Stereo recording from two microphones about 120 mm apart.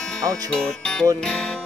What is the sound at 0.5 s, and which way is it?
Speech, 5° left (ahead or behind).